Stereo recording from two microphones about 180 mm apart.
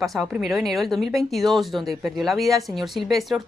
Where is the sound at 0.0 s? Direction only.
Centre (ahead or behind).